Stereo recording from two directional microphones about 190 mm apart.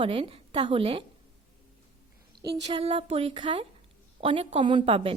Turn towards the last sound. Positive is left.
turn(degrees=-30)  # may be behind; listen again after turning